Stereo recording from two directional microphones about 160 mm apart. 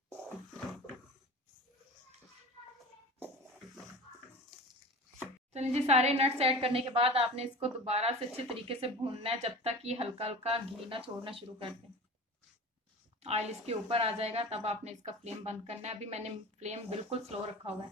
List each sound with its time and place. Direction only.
0.1 s a sound: 5° left (ahead or behind)
5.5 s speech: 40° right (ahead or behind)
13.2 s speech: 45° right (ahead or behind)